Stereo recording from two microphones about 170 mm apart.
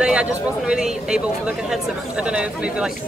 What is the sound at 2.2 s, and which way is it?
Speech, 5° right (ahead or behind).